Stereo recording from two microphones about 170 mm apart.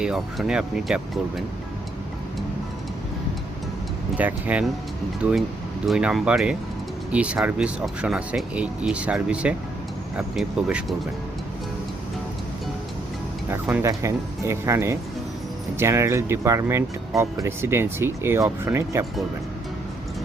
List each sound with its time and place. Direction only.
0.0 s speech: 5° right (ahead or behind)
4.2 s speech: 10° right (ahead or behind)
5.9 s speech: 5° right (ahead or behind)
13.5 s speech: 10° right (ahead or behind)